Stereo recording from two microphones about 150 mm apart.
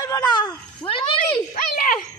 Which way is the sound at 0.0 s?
25° left (ahead or behind).